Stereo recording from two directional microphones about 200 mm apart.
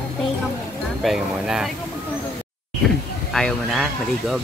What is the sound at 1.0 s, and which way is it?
Speech, centre (ahead or behind).